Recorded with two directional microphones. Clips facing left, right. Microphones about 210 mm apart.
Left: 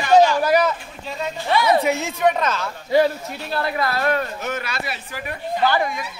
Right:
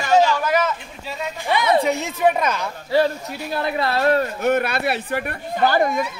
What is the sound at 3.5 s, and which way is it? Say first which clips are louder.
Speech: right 1 dB; 20° right (ahead or behind).